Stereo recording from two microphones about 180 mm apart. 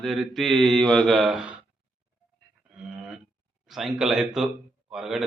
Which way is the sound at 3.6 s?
Centre (ahead or behind).